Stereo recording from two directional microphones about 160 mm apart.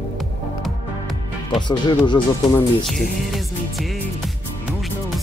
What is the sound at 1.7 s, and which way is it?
Speech, 30° left (ahead or behind).